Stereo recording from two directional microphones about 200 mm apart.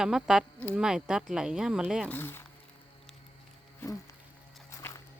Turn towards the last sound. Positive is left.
turn(degrees=15)  # may be behind; listen again after turning